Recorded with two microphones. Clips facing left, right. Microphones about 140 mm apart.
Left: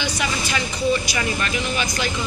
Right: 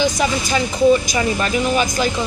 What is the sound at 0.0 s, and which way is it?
Speech, 40° right (ahead or behind).